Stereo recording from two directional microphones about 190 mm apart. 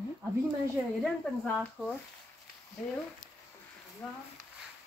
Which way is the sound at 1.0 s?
5° left (ahead or behind).